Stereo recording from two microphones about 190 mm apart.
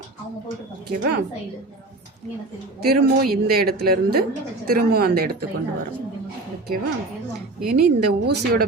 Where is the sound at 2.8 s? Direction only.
55° right (ahead or behind).